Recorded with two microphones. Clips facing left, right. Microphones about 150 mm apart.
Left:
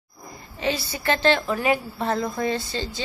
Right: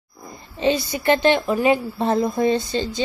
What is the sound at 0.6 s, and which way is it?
A woman's voice, 20° right (ahead or behind).